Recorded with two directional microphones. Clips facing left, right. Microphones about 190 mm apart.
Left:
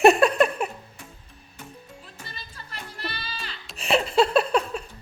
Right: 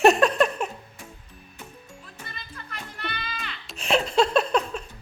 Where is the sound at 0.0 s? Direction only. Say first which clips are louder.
Left 1 dB; 10° left (ahead or behind).